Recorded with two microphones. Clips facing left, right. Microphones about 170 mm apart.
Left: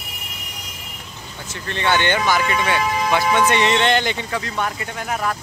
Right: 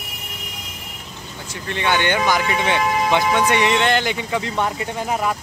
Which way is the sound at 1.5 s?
15° right (ahead or behind).